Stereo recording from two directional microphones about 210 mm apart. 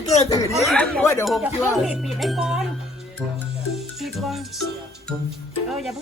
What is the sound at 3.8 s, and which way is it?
Music, centre (ahead or behind).